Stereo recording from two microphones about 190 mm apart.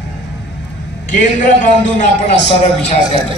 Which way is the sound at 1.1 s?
45° left (ahead or behind).